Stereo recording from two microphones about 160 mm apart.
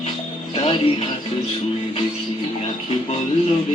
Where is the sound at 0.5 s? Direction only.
35° left (ahead or behind).